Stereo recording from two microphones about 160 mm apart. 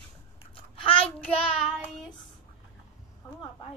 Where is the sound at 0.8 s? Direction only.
35° left (ahead or behind).